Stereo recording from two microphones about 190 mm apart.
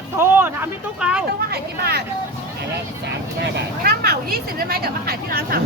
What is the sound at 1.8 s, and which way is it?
Speech, 55° right (ahead or behind).